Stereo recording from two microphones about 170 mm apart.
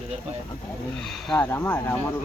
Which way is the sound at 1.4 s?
15° left (ahead or behind).